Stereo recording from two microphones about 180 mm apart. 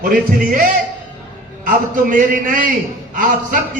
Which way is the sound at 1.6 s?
50° right (ahead or behind).